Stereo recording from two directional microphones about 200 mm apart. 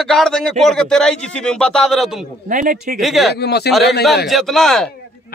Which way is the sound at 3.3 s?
55° left (ahead or behind).